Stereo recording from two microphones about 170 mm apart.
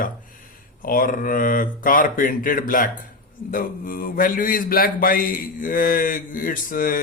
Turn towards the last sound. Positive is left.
turn(degrees=55)  # may be behind; listen again after turning